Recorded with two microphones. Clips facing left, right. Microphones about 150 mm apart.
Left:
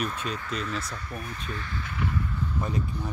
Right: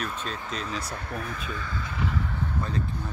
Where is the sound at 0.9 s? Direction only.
65° right (ahead or behind).